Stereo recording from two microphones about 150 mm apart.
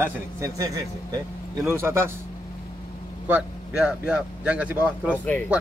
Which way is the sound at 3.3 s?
5° right (ahead or behind).